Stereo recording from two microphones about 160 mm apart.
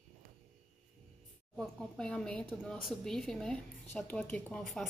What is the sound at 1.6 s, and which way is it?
Speech, 5° left (ahead or behind).